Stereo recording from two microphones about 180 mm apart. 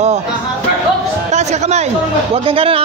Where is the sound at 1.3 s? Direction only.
40° right (ahead or behind).